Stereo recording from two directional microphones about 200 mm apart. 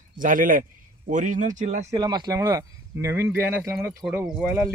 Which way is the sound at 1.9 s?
20° right (ahead or behind).